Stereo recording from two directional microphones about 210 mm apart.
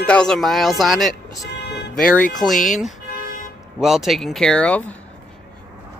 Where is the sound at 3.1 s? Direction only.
40° left (ahead or behind).